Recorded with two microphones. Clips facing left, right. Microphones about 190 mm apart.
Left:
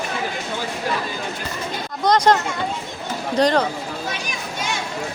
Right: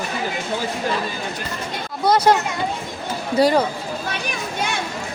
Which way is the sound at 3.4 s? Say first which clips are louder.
Right 1 dB; 10° right (ahead or behind).